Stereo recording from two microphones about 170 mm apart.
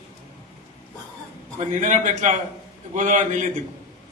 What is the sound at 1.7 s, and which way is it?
A man's voice, 45° right (ahead or behind).